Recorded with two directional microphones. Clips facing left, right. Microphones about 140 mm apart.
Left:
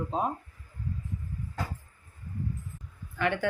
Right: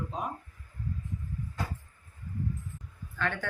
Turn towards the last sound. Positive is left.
turn(degrees=15)  # may be behind; listen again after turning